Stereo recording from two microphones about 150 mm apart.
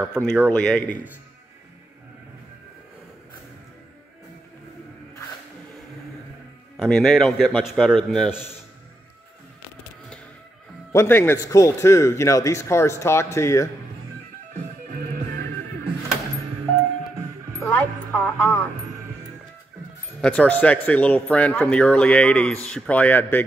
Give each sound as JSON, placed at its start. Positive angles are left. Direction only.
{"t": 0.1, "sound": "a man's voice", "side_deg": 5}
{"t": 6.8, "sound": "a man's voice", "side_deg": 0}
{"t": 10.9, "sound": "speech", "side_deg": 15}
{"t": 14.9, "sound": "music", "side_deg": -60}
{"t": 17.6, "sound": "music", "side_deg": 10}
{"t": 20.2, "sound": "speech", "side_deg": 10}